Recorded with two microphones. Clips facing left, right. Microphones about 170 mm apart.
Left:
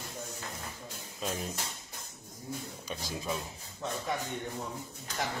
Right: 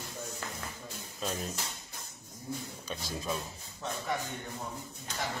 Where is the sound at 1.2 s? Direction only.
10° left (ahead or behind).